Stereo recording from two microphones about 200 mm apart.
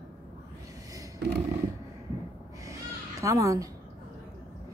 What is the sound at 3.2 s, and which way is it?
Speech, 15° right (ahead or behind).